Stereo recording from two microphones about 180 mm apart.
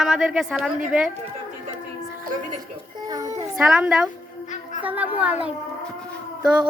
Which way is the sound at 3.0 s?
20° right (ahead or behind).